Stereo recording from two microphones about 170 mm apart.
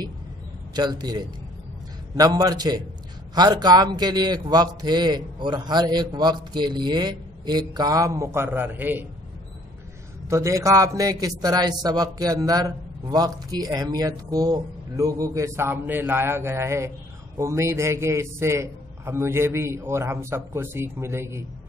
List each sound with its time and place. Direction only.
0.7 s a man's voice: 25° right (ahead or behind)
10.2 s a man's voice: 15° right (ahead or behind)